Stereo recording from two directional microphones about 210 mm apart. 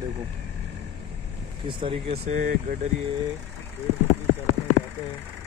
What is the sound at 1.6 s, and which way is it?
Speech, 25° right (ahead or behind).